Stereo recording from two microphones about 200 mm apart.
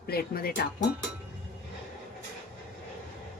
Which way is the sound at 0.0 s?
50° left (ahead or behind).